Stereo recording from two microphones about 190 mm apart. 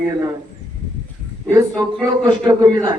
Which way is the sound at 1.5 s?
20° right (ahead or behind).